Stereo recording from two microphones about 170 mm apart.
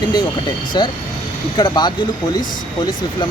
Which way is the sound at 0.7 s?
25° left (ahead or behind).